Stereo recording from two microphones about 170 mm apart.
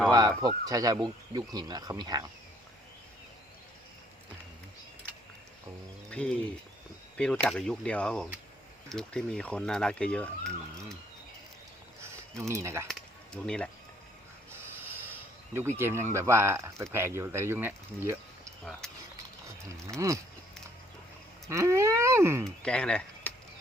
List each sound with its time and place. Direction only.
0.1 s speech: 20° right (ahead or behind)
6.1 s speech: 5° left (ahead or behind)
12.4 s speech: 15° right (ahead or behind)
12.9 s a sound: 5° left (ahead or behind)
14.5 s a sound: 15° right (ahead or behind)
15.5 s speech: 15° right (ahead or behind)
18.8 s mechanisms: 5° left (ahead or behind)
19.7 s speech: 20° right (ahead or behind)
21.5 s speech: 15° right (ahead or behind)
22.6 s speech: 5° left (ahead or behind)